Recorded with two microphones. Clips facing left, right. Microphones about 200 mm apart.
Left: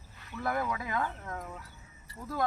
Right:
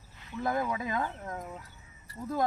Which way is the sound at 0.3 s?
20° right (ahead or behind).